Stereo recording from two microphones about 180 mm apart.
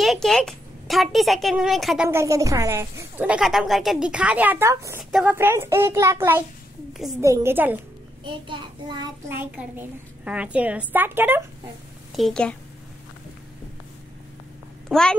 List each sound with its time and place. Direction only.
0.0 s a child's voice: centre (ahead or behind)
2.0 s a woman's voice: 15° right (ahead or behind)
6.9 s a sound: centre (ahead or behind)
7.2 s a woman's voice: 15° right (ahead or behind)
8.2 s child singing: 25° right (ahead or behind)
9.3 s a woman's voice: 10° right (ahead or behind)
12.2 s a child's voice: 5° left (ahead or behind)
14.9 s a child's voice: 5° left (ahead or behind)